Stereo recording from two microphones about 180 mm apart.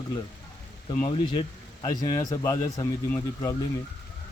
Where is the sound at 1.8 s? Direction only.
20° left (ahead or behind).